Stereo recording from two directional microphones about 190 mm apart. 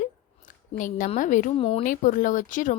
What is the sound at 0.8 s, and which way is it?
Speech, 45° left (ahead or behind).